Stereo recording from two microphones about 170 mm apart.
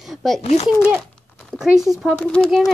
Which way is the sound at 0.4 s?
40° left (ahead or behind).